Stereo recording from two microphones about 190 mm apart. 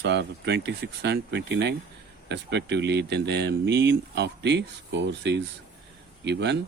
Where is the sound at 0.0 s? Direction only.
65° right (ahead or behind).